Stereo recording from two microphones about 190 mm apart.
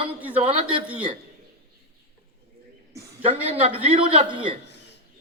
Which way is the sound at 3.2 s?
30° right (ahead or behind).